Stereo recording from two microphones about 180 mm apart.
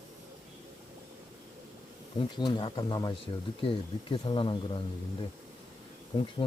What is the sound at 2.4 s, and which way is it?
Speech, 25° left (ahead or behind).